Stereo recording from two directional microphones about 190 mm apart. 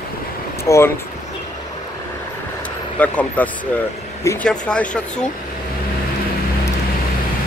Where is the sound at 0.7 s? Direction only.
15° left (ahead or behind).